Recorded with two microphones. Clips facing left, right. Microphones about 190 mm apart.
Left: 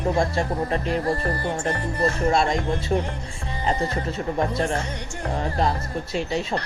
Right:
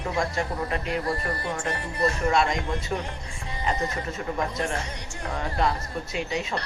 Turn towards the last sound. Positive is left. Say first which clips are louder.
# left 4 dB
turn(degrees=30)  # may be behind; listen again after turning